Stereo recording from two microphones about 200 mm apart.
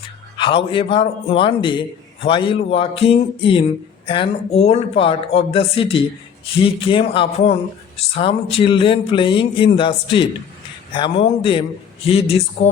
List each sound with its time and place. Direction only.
0.3 s speech: 25° left (ahead or behind)